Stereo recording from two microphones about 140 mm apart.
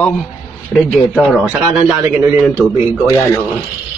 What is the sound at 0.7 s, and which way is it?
A man's voice, centre (ahead or behind).